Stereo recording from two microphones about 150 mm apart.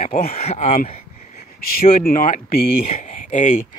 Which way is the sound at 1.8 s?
65° left (ahead or behind).